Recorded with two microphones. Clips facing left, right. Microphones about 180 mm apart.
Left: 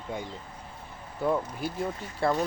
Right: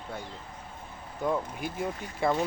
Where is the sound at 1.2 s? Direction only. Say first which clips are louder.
Left 2 dB; 5° left (ahead or behind).